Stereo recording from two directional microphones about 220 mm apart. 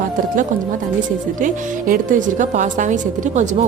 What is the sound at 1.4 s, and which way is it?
A woman's voice, 40° right (ahead or behind).